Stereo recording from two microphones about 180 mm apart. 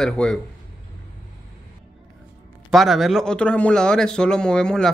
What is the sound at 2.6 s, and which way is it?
A man's voice, centre (ahead or behind).